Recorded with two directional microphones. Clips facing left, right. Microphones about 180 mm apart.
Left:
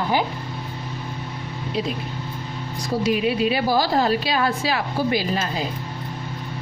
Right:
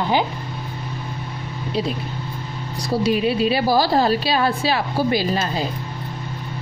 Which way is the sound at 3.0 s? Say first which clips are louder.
Right 2 dB; 30° right (ahead or behind).